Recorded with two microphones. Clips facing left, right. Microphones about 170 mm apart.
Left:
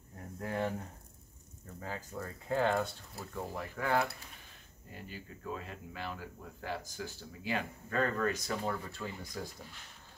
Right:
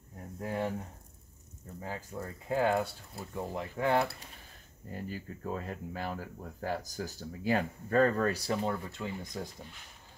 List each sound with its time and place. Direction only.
0.4 s speech: 5° right (ahead or behind)
1.8 s speech: 15° right (ahead or behind)
3.2 s speech: 20° right (ahead or behind)
4.9 s speech: 40° right (ahead or behind); by 9.5 s 20° right (ahead or behind)